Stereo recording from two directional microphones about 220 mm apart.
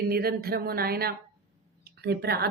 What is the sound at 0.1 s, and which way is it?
Speech, 45° right (ahead or behind).